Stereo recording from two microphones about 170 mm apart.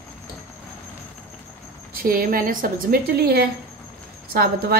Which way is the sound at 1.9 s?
60° right (ahead or behind).